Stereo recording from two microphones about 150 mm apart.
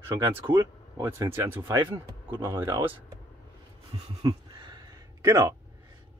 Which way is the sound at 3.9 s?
30° right (ahead or behind).